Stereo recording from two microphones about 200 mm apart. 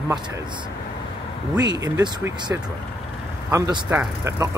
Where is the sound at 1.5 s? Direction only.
20° right (ahead or behind).